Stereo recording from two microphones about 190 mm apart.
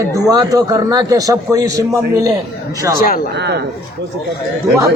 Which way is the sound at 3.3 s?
60° right (ahead or behind).